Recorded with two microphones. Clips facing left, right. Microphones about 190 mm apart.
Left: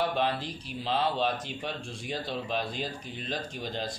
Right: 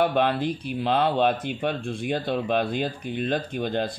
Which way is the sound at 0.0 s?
60° right (ahead or behind).